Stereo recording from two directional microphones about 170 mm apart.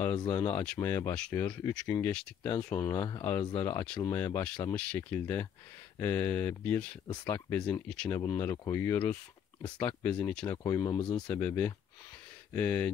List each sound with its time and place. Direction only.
0.3 s speech: 15° left (ahead or behind)
10.6 s speech: 20° left (ahead or behind)
11.3 s speech: 10° left (ahead or behind)